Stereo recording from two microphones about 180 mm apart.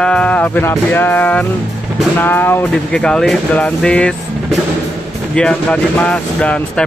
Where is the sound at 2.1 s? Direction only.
10° left (ahead or behind).